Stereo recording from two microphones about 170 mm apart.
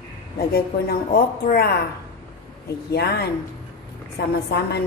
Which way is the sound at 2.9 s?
70° left (ahead or behind).